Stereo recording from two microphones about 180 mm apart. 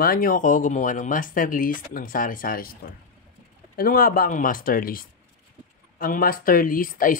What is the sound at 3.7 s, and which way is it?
Speech, 55° left (ahead or behind).